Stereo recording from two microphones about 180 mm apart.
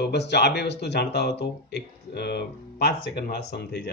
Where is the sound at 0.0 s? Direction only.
70° left (ahead or behind).